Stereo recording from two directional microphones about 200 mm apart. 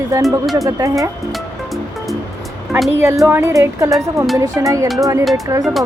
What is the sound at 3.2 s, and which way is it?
Speech, 10° right (ahead or behind).